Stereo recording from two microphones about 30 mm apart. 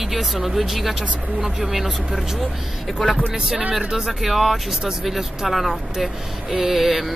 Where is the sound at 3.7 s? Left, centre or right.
Centre.